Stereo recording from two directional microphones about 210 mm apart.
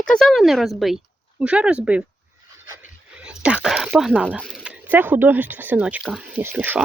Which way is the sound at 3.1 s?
5° right (ahead or behind).